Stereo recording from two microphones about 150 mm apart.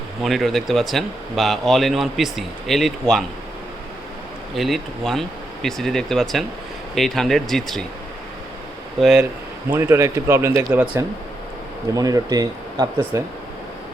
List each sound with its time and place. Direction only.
0.2 s speech: centre (ahead or behind)
4.5 s speech: centre (ahead or behind)
9.0 s speech: centre (ahead or behind)
9.6 s speech: 15° right (ahead or behind)
11.9 s speech: 25° right (ahead or behind)